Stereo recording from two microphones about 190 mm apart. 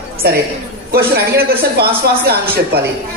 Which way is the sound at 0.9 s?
55° right (ahead or behind).